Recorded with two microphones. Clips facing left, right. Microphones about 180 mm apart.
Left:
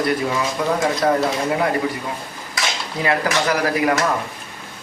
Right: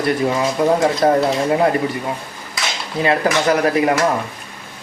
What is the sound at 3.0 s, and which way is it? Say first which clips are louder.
Speech: right 4 dB; 25° right (ahead or behind).